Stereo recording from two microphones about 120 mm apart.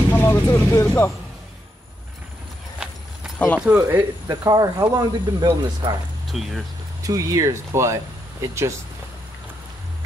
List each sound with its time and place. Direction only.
0.1 s vehicle: 15° left (ahead or behind)
0.5 s speech: 25° left (ahead or behind)
3.3 s speech: 10° left (ahead or behind)
3.6 s speech: 10° right (ahead or behind)
4.3 s speech: 30° right (ahead or behind)
6.2 s speech: centre (ahead or behind)
7.0 s speech: 30° right (ahead or behind)